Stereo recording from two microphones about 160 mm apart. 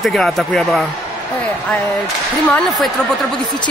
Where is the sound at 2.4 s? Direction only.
10° left (ahead or behind).